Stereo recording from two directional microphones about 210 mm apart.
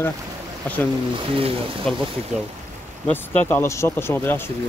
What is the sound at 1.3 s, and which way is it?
Speech, 25° right (ahead or behind).